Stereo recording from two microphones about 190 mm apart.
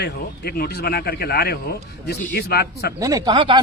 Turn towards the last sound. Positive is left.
turn(degrees=-25)  # may be behind; listen again after turning